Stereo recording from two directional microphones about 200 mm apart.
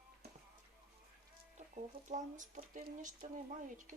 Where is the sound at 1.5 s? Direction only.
40° right (ahead or behind).